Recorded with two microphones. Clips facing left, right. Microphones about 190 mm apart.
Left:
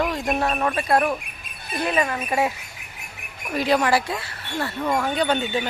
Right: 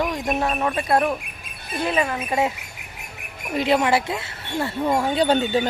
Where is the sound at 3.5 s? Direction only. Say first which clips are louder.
Right 1 dB; 25° right (ahead or behind).